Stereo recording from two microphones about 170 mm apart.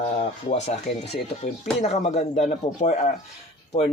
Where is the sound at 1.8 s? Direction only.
40° left (ahead or behind).